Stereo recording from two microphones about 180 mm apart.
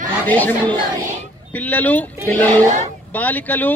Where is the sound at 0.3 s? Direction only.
10° left (ahead or behind).